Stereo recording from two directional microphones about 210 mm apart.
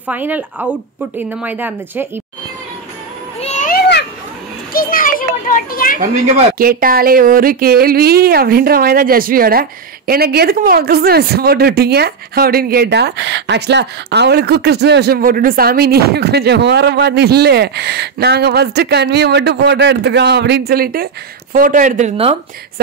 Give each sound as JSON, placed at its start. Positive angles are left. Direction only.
{"t": 0.0, "sound": "speech", "side_deg": -5}
{"t": 3.3, "sound": "children playing", "side_deg": 30}
{"t": 5.5, "sound": "speech", "side_deg": 40}
{"t": 5.9, "sound": "speech", "side_deg": -40}